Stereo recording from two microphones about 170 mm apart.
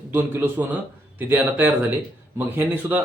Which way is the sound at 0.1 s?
10° right (ahead or behind).